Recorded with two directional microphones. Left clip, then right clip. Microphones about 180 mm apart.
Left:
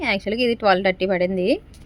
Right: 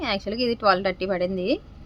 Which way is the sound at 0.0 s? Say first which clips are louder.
Left 4 dB; 20° left (ahead or behind).